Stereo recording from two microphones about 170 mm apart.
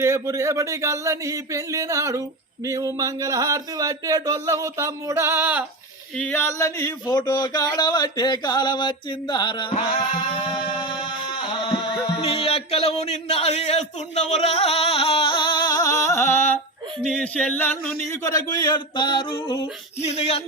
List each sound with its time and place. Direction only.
0.0 s speech: 15° right (ahead or behind)
6.1 s a sound: 10° left (ahead or behind); by 9.8 s 30° left (ahead or behind)
11.6 s music: 25° left (ahead or behind)
12.1 s a man's voice: 35° left (ahead or behind)
20.0 s speech: 40° left (ahead or behind)